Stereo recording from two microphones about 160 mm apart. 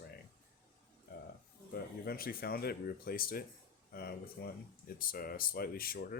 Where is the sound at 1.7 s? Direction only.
70° left (ahead or behind).